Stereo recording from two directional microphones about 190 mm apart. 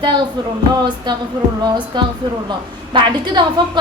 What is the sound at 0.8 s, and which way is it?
A woman's voice, 20° right (ahead or behind).